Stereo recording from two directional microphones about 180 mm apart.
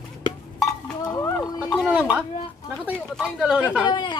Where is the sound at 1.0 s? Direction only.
20° left (ahead or behind).